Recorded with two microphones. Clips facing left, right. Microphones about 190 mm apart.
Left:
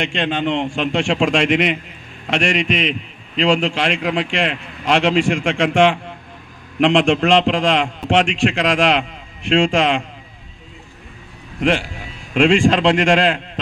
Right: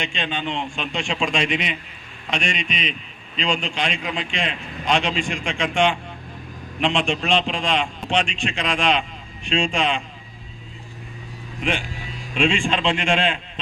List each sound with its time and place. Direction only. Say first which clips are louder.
0.0 s a man's voice: left 7 dB; 90° left
12.4 s a man's voice: left 8 dB; 90° left